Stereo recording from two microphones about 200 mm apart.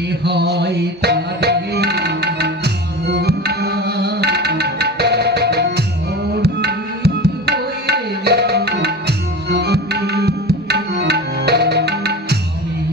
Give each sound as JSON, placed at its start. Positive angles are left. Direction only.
{"t": 0.2, "sound": "music", "side_deg": -55}
{"t": 6.3, "sound": "tabla", "side_deg": -55}